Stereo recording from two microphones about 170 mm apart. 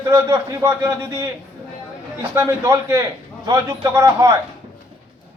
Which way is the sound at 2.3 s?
20° right (ahead or behind).